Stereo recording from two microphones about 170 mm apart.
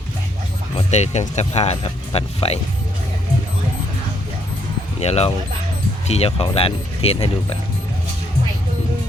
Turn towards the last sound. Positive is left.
turn(degrees=35)  # may be behind; listen again after turning